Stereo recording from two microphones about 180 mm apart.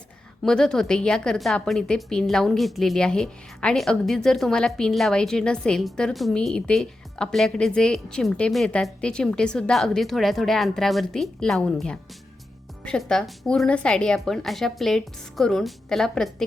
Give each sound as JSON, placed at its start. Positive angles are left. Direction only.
{"t": 0.4, "sound": "a woman's voice", "side_deg": 5}